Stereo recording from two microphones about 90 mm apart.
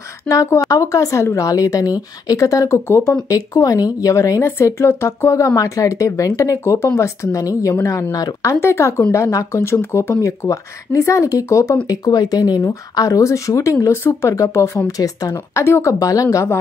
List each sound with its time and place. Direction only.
0.3 s speech: 35° left (ahead or behind)